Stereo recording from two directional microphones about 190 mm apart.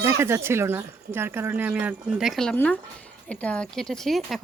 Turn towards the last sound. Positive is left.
turn(degrees=0)  # may be behind; listen again after turning